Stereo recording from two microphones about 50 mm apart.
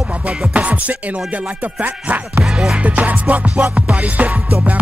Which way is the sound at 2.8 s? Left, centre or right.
Right.